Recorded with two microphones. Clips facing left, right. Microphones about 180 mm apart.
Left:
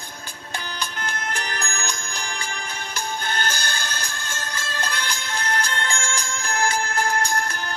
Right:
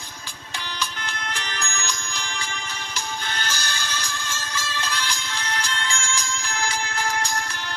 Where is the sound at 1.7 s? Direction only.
55° left (ahead or behind).